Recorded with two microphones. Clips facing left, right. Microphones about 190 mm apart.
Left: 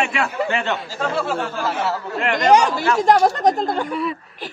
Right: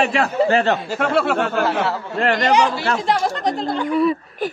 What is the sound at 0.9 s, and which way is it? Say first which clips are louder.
Speech: right 4 dB; 65° right (ahead or behind).